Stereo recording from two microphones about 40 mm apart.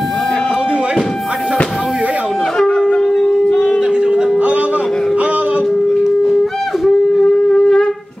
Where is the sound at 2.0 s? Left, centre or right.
Right.